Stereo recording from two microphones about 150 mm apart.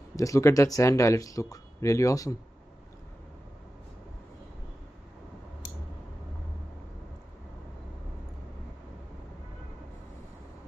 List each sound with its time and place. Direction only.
0.1 s speech: 20° left (ahead or behind)